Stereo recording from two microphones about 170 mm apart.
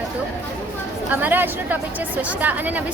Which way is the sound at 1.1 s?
10° right (ahead or behind).